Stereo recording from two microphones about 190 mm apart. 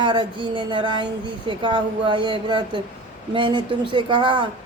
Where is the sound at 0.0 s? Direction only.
25° right (ahead or behind).